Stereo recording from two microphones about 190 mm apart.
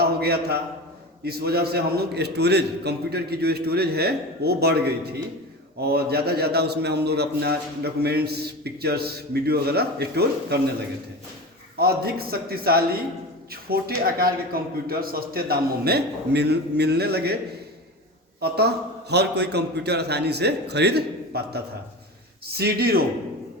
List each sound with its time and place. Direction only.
0.0 s a sound: 55° right (ahead or behind)
1.2 s a man's voice: 55° right (ahead or behind)
11.8 s a man's voice: 55° right (ahead or behind)
18.3 s a man's voice: 55° right (ahead or behind)